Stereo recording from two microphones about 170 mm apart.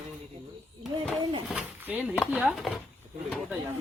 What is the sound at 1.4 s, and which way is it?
Speech, 10° right (ahead or behind).